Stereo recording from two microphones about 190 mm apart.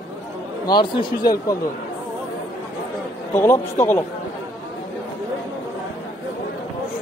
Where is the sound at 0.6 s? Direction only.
25° left (ahead or behind).